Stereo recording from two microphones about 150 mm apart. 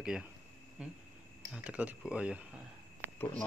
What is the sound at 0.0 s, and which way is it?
Speech, 5° right (ahead or behind).